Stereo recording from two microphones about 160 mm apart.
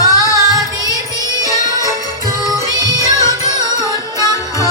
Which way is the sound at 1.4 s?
20° left (ahead or behind).